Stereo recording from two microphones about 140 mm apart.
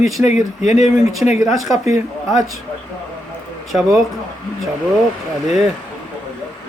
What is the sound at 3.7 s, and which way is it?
Speech, 5° right (ahead or behind).